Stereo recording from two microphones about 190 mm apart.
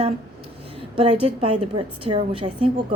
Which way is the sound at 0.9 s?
30° right (ahead or behind).